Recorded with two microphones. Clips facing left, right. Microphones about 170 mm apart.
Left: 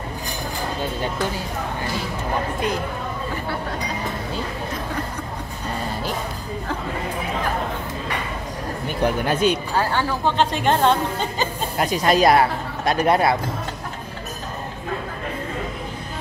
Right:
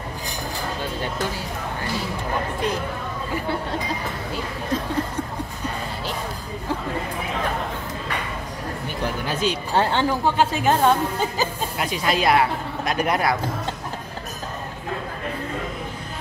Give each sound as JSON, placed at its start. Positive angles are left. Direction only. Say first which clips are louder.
{"t": 9.0, "sound": "speech", "louder": "left 5 dB", "side_deg": 55}
{"t": 9.8, "sound": "speech", "louder": "right 2 dB", "side_deg": -20}
{"t": 10.2, "sound": "speech", "louder": "left 3 dB", "side_deg": -5}
{"t": 11.7, "sound": "speech", "louder": "left 5 dB", "side_deg": 40}